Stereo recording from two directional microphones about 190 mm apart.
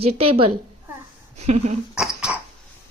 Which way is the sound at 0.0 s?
30° right (ahead or behind).